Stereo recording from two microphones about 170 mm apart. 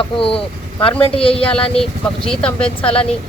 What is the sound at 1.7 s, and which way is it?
Speech, 5° left (ahead or behind).